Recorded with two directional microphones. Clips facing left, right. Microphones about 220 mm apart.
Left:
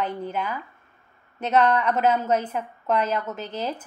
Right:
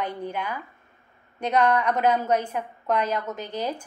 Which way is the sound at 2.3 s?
5° left (ahead or behind).